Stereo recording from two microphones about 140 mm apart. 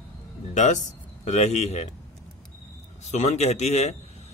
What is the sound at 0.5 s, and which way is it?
Speech, 60° left (ahead or behind).